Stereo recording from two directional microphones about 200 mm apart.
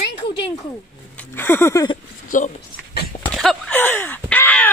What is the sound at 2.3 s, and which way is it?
Speech, 40° left (ahead or behind).